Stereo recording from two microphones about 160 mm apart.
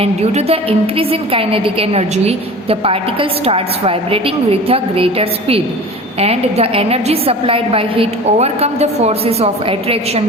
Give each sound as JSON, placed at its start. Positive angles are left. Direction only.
{"t": 0.0, "sound": "a woman's voice", "side_deg": -40}